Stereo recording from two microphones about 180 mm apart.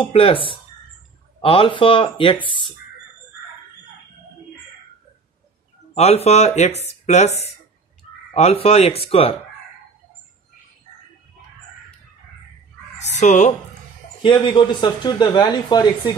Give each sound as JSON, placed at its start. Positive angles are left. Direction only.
{"t": 0.1, "sound": "speech", "side_deg": 30}
{"t": 5.9, "sound": "speech", "side_deg": 35}
{"t": 13.0, "sound": "speech", "side_deg": 40}
{"t": 14.2, "sound": "speech", "side_deg": 25}